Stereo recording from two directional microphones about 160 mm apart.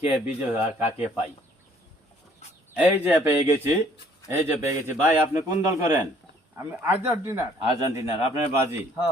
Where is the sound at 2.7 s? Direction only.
10° right (ahead or behind).